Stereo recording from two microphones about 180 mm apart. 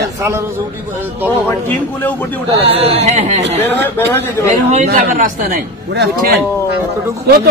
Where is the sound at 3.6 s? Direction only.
10° left (ahead or behind).